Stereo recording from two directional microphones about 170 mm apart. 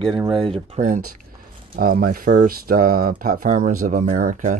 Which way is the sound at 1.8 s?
60° right (ahead or behind).